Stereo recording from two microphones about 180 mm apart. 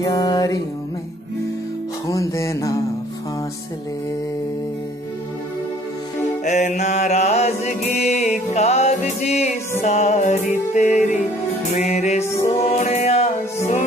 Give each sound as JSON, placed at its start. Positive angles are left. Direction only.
{"t": 0.0, "sound": "music", "side_deg": 20}
{"t": 2.0, "sound": "music", "side_deg": 15}
{"t": 6.4, "sound": "music", "side_deg": 40}